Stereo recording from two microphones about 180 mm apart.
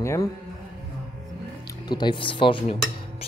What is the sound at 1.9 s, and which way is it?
Speech, 25° left (ahead or behind).